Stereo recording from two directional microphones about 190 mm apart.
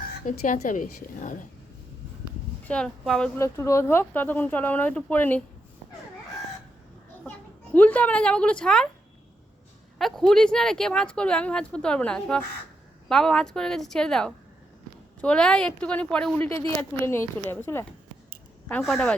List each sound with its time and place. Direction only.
0.3 s a woman's voice: 40° left (ahead or behind)
2.6 s speech: 5° left (ahead or behind)
3.4 s speech: 15° left (ahead or behind)
7.3 s a woman's voice: 10° left (ahead or behind)
10.0 s speech: centre (ahead or behind)
18.7 s speech: centre (ahead or behind)